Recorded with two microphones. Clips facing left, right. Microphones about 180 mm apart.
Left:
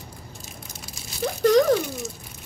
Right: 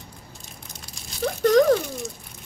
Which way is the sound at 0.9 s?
Centre (ahead or behind).